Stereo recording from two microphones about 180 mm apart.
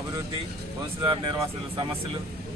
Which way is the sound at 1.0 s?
25° right (ahead or behind).